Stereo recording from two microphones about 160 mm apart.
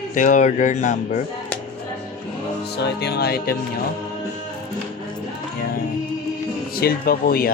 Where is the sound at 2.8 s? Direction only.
90° left.